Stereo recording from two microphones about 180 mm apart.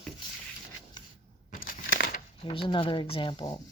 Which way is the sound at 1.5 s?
50° left (ahead or behind).